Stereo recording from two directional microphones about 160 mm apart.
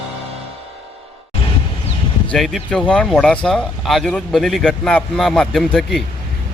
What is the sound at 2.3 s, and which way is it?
Speech, centre (ahead or behind).